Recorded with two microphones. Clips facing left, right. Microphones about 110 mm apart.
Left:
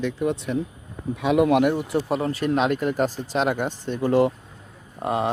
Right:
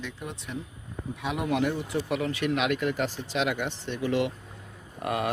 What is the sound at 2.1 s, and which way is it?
Speech, 35° left (ahead or behind).